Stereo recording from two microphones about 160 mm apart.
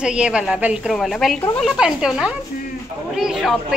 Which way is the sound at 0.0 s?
5° right (ahead or behind).